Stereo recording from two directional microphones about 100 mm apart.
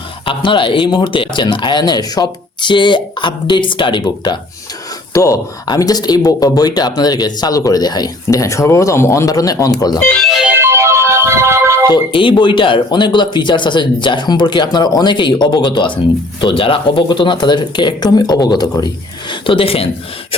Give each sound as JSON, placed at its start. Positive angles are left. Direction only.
{"t": 0.3, "sound": "speech", "side_deg": 55}
{"t": 5.1, "sound": "speech", "side_deg": 30}
{"t": 10.0, "sound": "speech", "side_deg": 10}
{"t": 10.2, "sound": "music", "side_deg": -5}
{"t": 10.5, "sound": "music", "side_deg": -25}
{"t": 12.1, "sound": "speech", "side_deg": 55}
{"t": 16.4, "sound": "speech", "side_deg": 60}
{"t": 17.1, "sound": "speech", "side_deg": 50}
{"t": 19.3, "sound": "speech", "side_deg": 60}